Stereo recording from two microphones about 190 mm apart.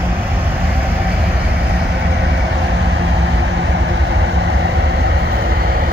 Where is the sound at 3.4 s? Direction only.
75° right (ahead or behind).